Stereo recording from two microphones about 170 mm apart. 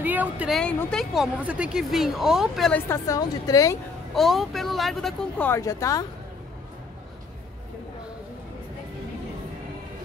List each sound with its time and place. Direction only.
0.0 s a woman's voice: 10° right (ahead or behind)
0.6 s speech: 5° left (ahead or behind)
2.9 s a woman's voice: 20° left (ahead or behind)
4.1 s speech: centre (ahead or behind)
5.6 s a woman's voice: 20° left (ahead or behind)